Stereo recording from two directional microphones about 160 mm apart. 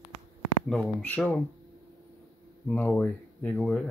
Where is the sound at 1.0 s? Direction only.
10° left (ahead or behind).